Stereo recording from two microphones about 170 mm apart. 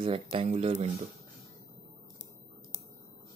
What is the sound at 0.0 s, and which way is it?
Speech, 35° right (ahead or behind).